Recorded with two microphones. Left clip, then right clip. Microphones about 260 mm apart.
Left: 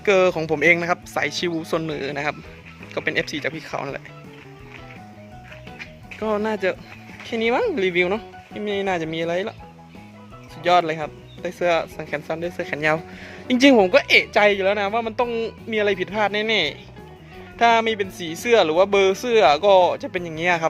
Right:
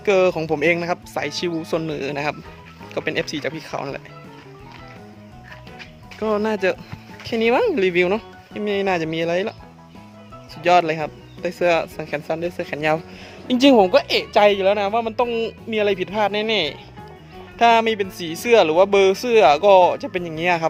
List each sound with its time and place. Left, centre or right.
0.0 s a woman's voice: centre
6.1 s speech: centre
10.6 s a woman's voice: centre